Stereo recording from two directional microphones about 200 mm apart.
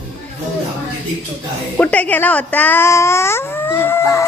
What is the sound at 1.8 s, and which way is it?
Speech, 10° left (ahead or behind).